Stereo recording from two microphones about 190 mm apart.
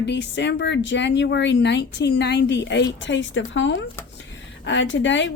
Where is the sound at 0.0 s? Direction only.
65° left (ahead or behind).